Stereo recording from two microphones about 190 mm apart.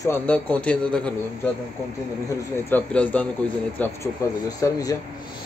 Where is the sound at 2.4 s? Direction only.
10° left (ahead or behind).